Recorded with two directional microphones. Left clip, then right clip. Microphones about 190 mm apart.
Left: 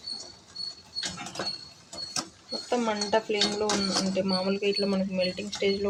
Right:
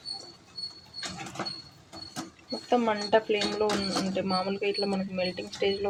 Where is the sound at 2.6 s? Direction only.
10° right (ahead or behind).